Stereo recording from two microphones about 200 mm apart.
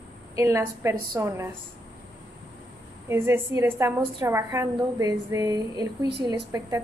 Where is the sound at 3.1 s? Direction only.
10° right (ahead or behind).